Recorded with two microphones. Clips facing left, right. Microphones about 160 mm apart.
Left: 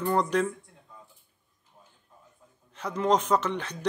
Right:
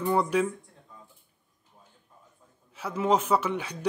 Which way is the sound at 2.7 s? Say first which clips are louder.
Even; 5° right (ahead or behind).